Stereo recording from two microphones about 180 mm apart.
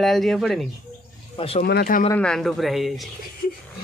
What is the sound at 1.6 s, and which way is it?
Speech, 60° left (ahead or behind).